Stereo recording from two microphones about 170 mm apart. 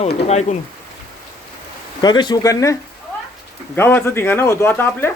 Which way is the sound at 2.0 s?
25° left (ahead or behind).